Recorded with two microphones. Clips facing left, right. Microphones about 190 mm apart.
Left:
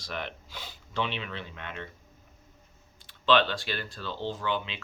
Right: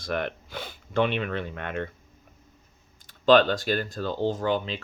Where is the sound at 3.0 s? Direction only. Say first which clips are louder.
Right 6 dB; 45° right (ahead or behind).